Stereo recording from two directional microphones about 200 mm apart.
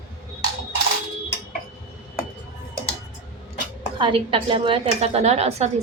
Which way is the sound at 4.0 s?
25° right (ahead or behind).